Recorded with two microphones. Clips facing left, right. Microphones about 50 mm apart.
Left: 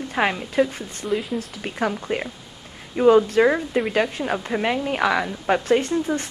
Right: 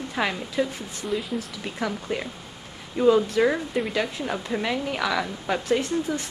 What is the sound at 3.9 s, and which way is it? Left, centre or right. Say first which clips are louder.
A woman's voice: left 5 dB; left.